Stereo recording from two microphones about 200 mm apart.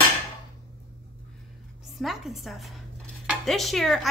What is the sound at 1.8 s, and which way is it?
Dishes, centre (ahead or behind).